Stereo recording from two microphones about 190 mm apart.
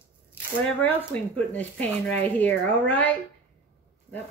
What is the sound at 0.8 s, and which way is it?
Speech, 10° left (ahead or behind).